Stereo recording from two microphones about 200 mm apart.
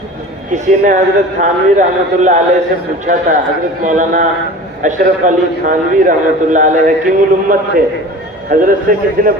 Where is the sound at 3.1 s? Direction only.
50° right (ahead or behind).